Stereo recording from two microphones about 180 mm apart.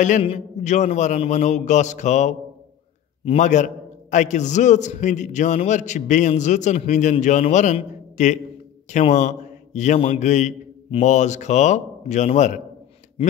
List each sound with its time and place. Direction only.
0.0 s a man's voice: 40° left (ahead or behind)